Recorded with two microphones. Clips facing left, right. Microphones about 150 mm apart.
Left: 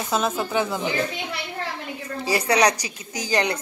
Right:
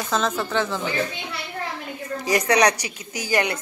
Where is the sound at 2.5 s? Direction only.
30° left (ahead or behind).